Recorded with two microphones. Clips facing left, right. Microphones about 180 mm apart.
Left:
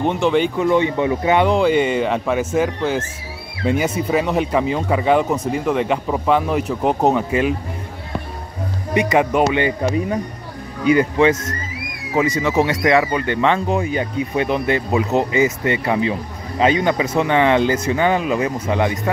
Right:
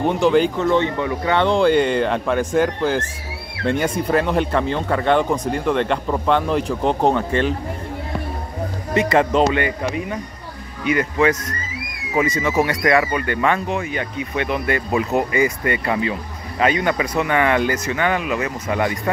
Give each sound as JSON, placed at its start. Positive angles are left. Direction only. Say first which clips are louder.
{"t": 0.0, "sound": "speech", "louder": "right 1 dB", "side_deg": 0}
{"t": 0.6, "sound": "speech", "louder": "left 2 dB", "side_deg": 10}
{"t": 1.4, "sound": "speech", "louder": "right 3 dB", "side_deg": 5}
{"t": 8.9, "sound": "speech", "louder": "even", "side_deg": 10}
{"t": 10.8, "sound": "speech", "louder": "left 4 dB", "side_deg": 30}
{"t": 13.7, "sound": "speech", "louder": "left 4 dB", "side_deg": 35}
{"t": 14.9, "sound": "speech", "louder": "left 2 dB", "side_deg": 20}